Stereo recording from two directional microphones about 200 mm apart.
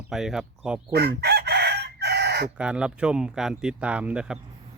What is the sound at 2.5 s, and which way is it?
Speech, 5° right (ahead or behind).